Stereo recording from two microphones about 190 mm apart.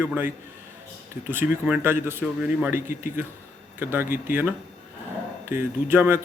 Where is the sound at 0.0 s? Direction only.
10° right (ahead or behind).